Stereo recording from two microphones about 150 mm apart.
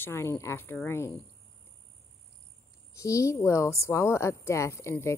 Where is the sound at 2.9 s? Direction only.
20° left (ahead or behind).